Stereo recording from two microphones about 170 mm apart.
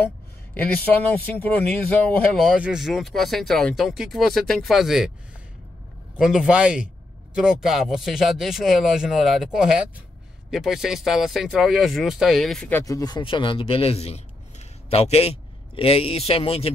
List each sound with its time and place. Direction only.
0.6 s speech: 10° left (ahead or behind)
6.1 s speech: 5° right (ahead or behind); by 16.7 s 35° left (ahead or behind)